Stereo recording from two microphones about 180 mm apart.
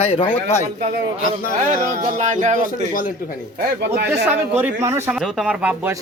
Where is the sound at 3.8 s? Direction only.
60° right (ahead or behind).